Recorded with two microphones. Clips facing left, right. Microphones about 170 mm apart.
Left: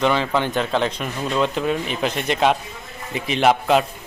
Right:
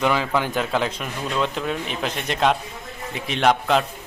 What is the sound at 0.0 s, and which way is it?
A man's voice, 5° right (ahead or behind).